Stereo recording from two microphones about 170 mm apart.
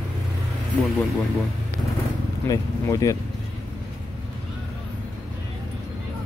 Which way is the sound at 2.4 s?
20° left (ahead or behind).